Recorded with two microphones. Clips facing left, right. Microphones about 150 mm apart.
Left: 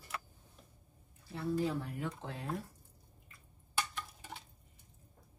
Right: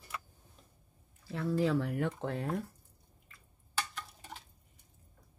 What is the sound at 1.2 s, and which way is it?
Speech, 90° right.